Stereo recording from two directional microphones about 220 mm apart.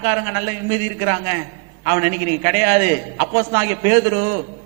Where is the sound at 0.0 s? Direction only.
15° right (ahead or behind).